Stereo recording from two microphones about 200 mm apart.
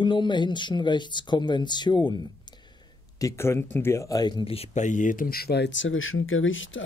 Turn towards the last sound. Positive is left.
turn(degrees=75)  # may be behind; listen again after turning